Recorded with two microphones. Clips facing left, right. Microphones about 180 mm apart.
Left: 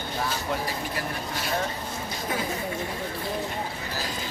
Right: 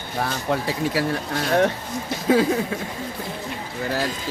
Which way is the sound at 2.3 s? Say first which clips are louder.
Right 14 dB; 90° right.